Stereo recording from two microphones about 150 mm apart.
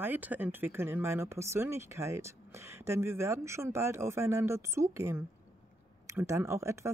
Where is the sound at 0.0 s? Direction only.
10° right (ahead or behind).